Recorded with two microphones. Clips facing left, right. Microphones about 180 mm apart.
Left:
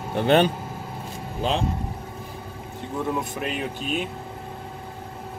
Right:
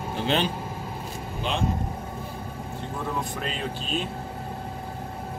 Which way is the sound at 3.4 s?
15° left (ahead or behind).